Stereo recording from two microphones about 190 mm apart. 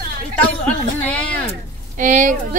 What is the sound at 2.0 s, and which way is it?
Speech, 40° right (ahead or behind).